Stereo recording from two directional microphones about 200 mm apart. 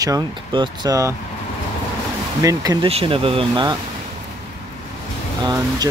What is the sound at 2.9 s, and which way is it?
Speech, 30° right (ahead or behind).